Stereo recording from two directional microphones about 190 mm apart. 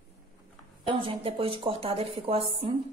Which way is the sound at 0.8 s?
25° right (ahead or behind).